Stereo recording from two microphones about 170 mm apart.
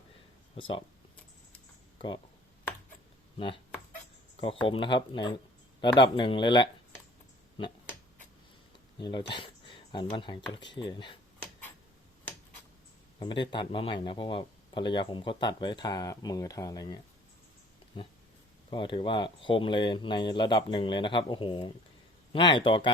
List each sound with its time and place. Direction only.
0.5 s speech: 30° left (ahead or behind)
3.3 s speech: 30° left (ahead or behind)
4.6 s speech: 30° left (ahead or behind)
9.0 s speech: 25° left (ahead or behind)
13.1 s speech: 30° left (ahead or behind)